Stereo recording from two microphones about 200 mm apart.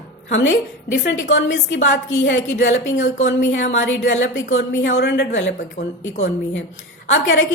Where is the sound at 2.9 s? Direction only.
35° left (ahead or behind).